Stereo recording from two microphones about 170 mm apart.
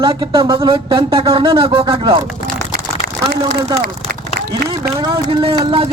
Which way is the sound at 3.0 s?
70° right (ahead or behind).